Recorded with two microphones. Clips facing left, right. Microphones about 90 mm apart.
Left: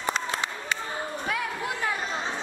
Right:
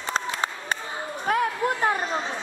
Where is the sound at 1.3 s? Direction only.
45° right (ahead or behind).